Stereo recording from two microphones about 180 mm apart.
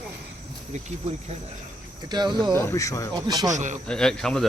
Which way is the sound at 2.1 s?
25° right (ahead or behind).